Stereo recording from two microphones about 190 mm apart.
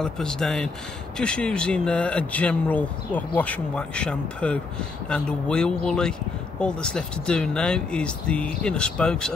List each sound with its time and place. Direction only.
0.0 s speech: 5° left (ahead or behind)